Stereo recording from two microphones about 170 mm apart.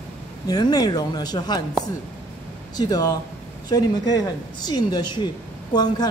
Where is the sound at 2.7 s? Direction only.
25° left (ahead or behind).